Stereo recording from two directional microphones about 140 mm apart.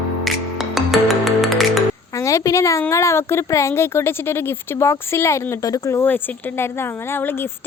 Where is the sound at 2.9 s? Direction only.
20° left (ahead or behind).